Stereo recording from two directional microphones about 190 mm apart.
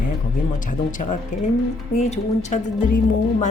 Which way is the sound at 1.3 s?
40° left (ahead or behind).